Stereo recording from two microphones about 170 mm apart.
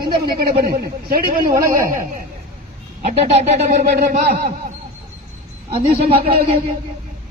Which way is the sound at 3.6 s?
75° right (ahead or behind).